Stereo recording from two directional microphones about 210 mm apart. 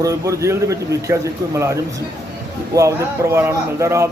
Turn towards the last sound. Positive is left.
turn(degrees=-15)  # may be behind; listen again after turning